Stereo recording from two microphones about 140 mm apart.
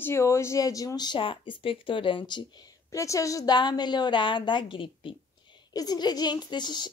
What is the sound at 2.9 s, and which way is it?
A woman's voice, 25° left (ahead or behind).